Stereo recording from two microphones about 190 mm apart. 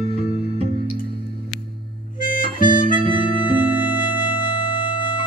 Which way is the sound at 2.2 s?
45° left (ahead or behind).